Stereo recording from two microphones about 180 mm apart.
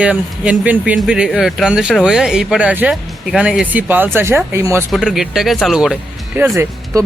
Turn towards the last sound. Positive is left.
turn(degrees=-15)  # may be behind; listen again after turning